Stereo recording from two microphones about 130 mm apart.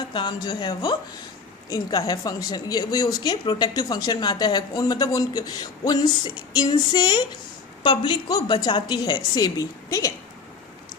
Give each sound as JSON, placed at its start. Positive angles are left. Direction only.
{"t": 0.1, "sound": "a woman's voice", "side_deg": 35}